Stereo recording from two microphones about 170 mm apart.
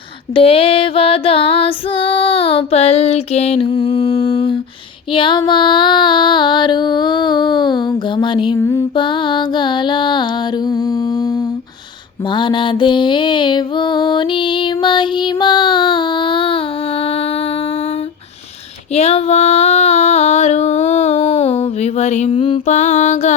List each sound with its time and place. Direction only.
0.3 s female singing: 35° left (ahead or behind)
3.7 s mantra: 25° left (ahead or behind)
5.1 s female singing: 30° left (ahead or behind)
8.5 s music: 15° left (ahead or behind)
9.0 s mantra: 30° left (ahead or behind)
10.7 s humming: 20° left (ahead or behind)
12.3 s music: 30° left (ahead or behind)
18.9 s a sound: 40° left (ahead or behind)